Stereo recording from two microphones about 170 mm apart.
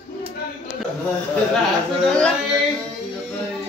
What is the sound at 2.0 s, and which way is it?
Speech, 5° left (ahead or behind).